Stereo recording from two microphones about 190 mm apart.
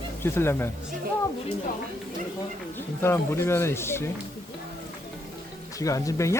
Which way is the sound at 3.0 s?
10° left (ahead or behind).